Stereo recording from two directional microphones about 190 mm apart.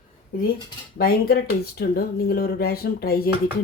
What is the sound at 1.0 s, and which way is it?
Speech, 55° left (ahead or behind).